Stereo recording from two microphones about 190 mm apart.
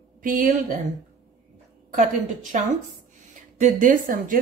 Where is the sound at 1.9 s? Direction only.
40° right (ahead or behind).